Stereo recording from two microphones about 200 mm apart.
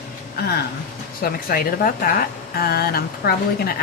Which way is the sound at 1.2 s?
45° left (ahead or behind).